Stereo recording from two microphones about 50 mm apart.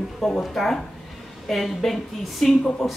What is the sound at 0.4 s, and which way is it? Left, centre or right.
Speech, centre.